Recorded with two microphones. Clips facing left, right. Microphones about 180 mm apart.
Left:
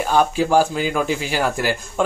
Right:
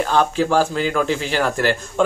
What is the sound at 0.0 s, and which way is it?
A man's voice, 10° left (ahead or behind).